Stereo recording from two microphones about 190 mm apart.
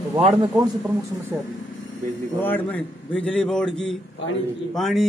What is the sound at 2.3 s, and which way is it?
A man's voice, 10° left (ahead or behind).